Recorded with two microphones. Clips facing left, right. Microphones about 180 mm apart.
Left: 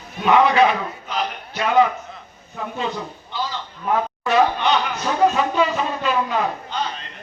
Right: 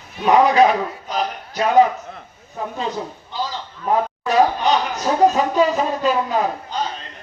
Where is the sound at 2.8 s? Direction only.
40° right (ahead or behind).